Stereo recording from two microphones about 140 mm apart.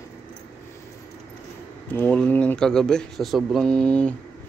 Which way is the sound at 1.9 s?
10° left (ahead or behind).